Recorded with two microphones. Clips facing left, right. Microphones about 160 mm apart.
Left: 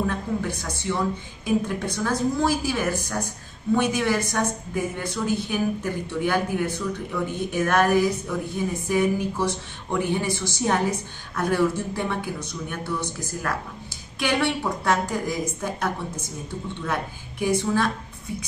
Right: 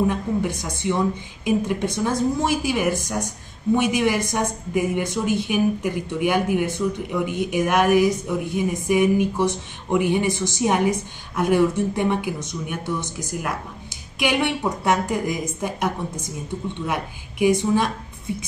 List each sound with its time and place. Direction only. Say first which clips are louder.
0.0 s a woman's voice: right 4 dB; 15° right (ahead or behind)